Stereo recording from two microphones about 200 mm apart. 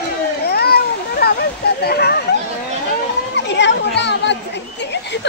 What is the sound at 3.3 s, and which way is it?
A child's voice, 60° left (ahead or behind).